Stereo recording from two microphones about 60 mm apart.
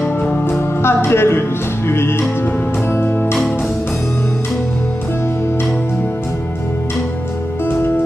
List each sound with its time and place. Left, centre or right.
0.0 s music: left
0.6 s music: left